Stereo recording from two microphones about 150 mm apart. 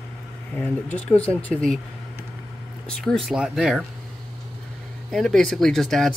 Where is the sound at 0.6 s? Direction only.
10° left (ahead or behind).